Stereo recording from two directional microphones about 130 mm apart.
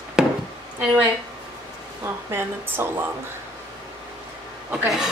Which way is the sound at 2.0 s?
20° right (ahead or behind).